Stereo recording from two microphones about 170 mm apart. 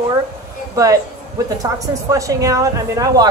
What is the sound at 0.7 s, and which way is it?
Speech, 20° right (ahead or behind).